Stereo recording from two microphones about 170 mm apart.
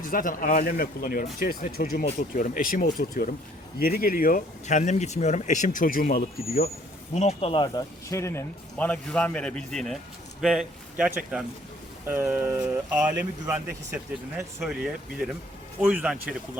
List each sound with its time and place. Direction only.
0.1 s speech: 55° left (ahead or behind)
7.1 s speech: 40° left (ahead or behind); by 14.4 s 15° right (ahead or behind)
14.6 s speech: 5° right (ahead or behind)